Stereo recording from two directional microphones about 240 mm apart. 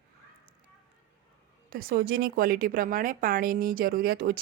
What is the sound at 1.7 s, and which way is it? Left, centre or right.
Speech, right.